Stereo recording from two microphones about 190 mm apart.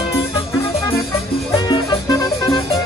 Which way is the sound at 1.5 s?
20° left (ahead or behind).